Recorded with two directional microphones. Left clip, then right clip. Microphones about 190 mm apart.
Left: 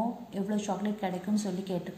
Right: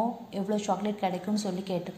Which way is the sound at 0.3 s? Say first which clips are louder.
Right 4 dB; 15° right (ahead or behind).